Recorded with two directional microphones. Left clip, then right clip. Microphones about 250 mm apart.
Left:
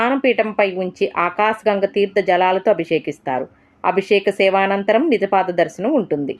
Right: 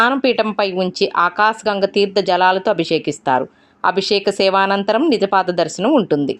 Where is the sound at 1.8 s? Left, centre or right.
Centre.